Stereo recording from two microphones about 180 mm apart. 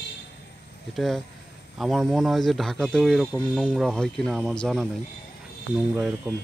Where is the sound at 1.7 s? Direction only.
Centre (ahead or behind).